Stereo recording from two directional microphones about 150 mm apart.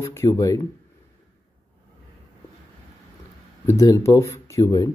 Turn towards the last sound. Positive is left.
turn(degrees=20)  # may be behind; listen again after turning